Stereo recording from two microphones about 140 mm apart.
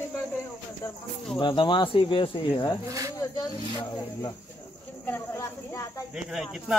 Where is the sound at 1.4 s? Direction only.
35° left (ahead or behind).